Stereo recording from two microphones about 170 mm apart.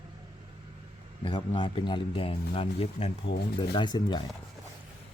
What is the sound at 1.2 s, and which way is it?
A man's voice, 30° left (ahead or behind).